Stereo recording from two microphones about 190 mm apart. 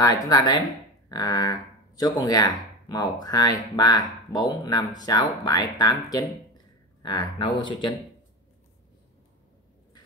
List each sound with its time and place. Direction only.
0.0 s speech: 20° left (ahead or behind)